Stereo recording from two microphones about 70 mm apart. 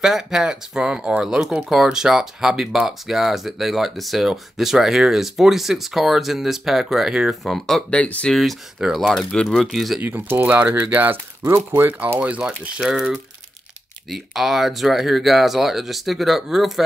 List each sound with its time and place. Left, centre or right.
0.0 s speech: centre
7.9 s speech: centre
8.3 s speech: centre
8.7 s speech: centre
9.0 s speech: centre
9.6 s speech: centre
10.0 s speech: right
12.2 s speech: centre